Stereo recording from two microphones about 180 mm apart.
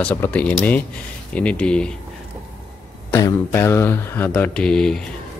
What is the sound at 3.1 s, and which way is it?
Speech, 15° left (ahead or behind).